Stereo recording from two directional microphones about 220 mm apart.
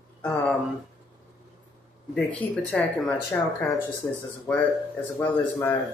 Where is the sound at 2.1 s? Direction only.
5° left (ahead or behind).